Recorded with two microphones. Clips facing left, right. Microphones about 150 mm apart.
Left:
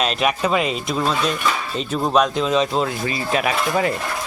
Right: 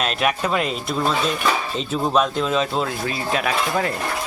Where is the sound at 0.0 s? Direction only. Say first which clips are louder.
Left 2 dB; centre (ahead or behind).